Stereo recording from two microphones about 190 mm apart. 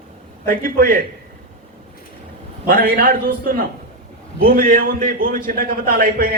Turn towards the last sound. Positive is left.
turn(degrees=-50)  # may be behind; listen again after turning